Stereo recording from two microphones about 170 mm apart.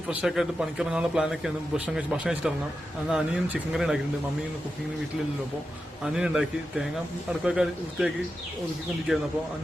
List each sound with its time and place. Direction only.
0.1 s a man's voice: 5° right (ahead or behind)
6.1 s a man's voice: 5° right (ahead or behind)